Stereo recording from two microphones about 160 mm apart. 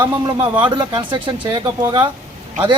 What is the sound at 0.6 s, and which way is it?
Speech, 30° right (ahead or behind).